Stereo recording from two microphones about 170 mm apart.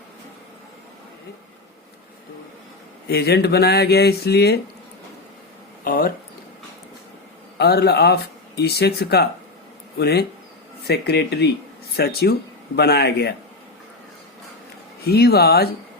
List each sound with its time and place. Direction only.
3.1 s speech: 70° left (ahead or behind)
5.8 s a sound: 60° left (ahead or behind)
7.6 s speech: 70° left (ahead or behind)
15.0 s speech: 70° left (ahead or behind)